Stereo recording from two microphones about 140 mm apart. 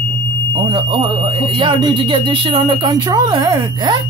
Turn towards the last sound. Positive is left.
turn(degrees=-25)  # may be behind; listen again after turning